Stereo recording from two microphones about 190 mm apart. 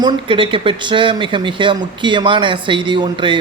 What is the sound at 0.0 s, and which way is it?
Speech, 25° right (ahead or behind).